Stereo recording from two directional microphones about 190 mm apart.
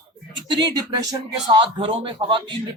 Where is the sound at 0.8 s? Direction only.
20° right (ahead or behind).